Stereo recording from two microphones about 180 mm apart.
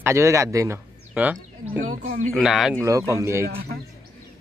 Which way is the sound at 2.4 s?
Centre (ahead or behind).